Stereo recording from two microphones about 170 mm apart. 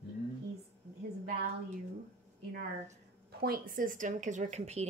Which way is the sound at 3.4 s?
60° right (ahead or behind).